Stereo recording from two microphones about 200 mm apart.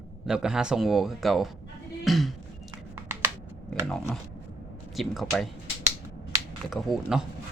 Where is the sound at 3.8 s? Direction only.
5° left (ahead or behind).